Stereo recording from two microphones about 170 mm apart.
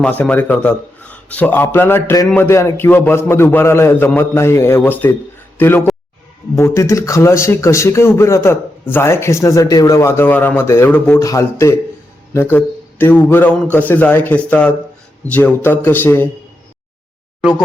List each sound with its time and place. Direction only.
0.0 s a man's voice: 10° left (ahead or behind)